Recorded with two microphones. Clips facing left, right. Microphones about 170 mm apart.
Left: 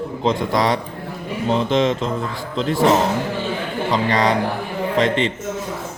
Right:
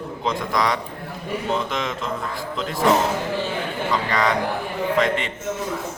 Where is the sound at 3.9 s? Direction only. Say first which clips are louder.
Left 4 dB; 25° left (ahead or behind).